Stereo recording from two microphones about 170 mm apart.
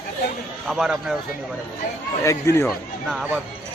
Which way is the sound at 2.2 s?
15° left (ahead or behind).